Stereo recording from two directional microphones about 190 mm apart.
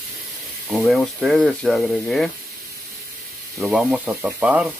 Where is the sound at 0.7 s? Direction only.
Centre (ahead or behind).